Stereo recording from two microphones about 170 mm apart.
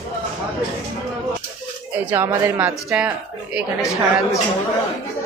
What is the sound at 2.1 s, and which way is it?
Speech, 10° right (ahead or behind).